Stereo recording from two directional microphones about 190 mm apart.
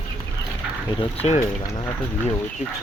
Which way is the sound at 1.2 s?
35° left (ahead or behind).